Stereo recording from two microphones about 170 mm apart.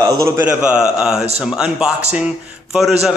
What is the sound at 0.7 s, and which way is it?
A man's voice, 5° right (ahead or behind).